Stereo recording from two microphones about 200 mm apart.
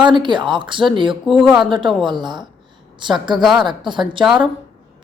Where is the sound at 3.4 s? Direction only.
Centre (ahead or behind).